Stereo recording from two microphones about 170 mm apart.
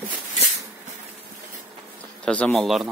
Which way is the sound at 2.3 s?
5° left (ahead or behind).